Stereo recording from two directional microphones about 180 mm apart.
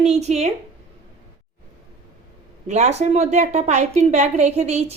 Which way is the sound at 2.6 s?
40° right (ahead or behind).